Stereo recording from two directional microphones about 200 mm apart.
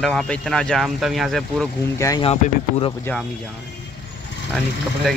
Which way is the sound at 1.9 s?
15° left (ahead or behind).